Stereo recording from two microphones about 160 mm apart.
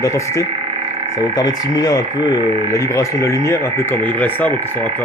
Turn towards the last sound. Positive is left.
turn(degrees=10)  # may be behind; listen again after turning